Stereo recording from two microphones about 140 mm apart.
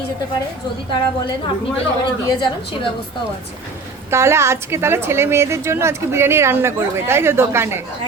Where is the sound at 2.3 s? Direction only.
35° left (ahead or behind).